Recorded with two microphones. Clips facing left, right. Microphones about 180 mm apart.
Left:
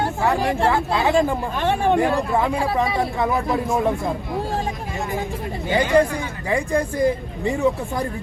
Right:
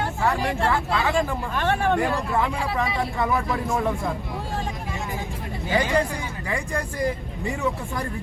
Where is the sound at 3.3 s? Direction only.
25° left (ahead or behind).